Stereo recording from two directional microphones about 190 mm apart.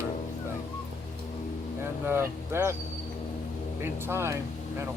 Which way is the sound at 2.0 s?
15° right (ahead or behind).